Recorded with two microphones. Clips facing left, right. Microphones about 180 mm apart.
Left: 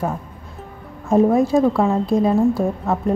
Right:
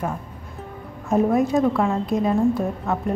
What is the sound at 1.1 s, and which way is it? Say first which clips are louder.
A woman's voice: left 4 dB; 30° left (ahead or behind).